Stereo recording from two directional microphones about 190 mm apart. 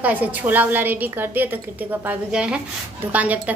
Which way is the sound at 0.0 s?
10° right (ahead or behind).